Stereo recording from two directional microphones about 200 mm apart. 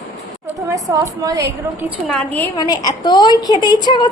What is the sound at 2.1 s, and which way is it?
Speech, 5° left (ahead or behind).